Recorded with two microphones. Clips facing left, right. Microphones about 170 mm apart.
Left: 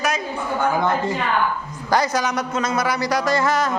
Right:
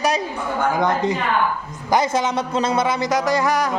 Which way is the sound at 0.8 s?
15° right (ahead or behind).